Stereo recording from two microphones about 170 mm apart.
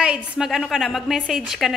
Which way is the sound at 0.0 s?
5° right (ahead or behind).